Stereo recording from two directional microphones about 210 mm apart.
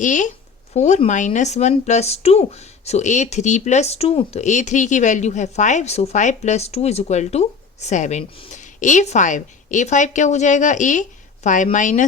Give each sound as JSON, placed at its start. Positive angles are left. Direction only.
{"t": 0.0, "sound": "speech", "side_deg": 35}